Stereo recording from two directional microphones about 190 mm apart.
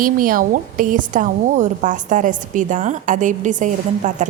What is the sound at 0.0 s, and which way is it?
A woman's voice, 45° right (ahead or behind).